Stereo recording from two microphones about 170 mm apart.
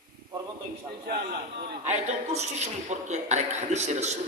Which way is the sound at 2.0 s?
40° right (ahead or behind).